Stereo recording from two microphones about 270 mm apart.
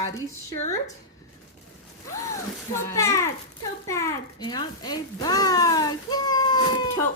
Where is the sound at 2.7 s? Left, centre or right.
Centre.